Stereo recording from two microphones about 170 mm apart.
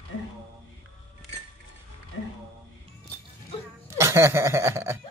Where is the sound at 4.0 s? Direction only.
15° right (ahead or behind).